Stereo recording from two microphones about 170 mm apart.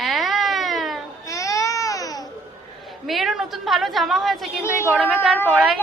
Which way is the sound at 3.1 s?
Centre (ahead or behind).